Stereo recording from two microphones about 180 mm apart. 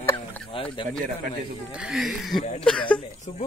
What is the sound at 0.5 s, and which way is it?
Speech, 30° left (ahead or behind).